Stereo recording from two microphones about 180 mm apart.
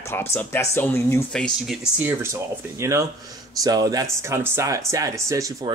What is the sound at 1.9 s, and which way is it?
Speech, 15° right (ahead or behind).